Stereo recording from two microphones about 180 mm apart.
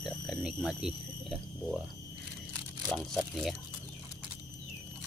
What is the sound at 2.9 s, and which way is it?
Speech, centre (ahead or behind).